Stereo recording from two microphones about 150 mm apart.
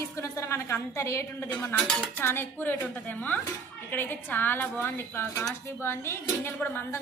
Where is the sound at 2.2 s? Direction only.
15° left (ahead or behind).